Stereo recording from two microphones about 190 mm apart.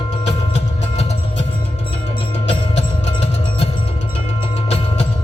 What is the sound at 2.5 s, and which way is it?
Music, 35° left (ahead or behind).